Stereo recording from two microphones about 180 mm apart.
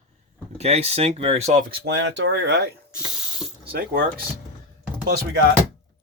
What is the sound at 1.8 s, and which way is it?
Speech, 75° right (ahead or behind).